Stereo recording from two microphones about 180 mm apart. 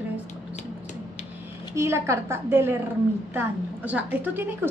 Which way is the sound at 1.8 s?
15° right (ahead or behind).